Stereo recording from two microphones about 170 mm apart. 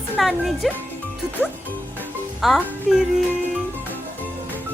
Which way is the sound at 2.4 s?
Centre (ahead or behind).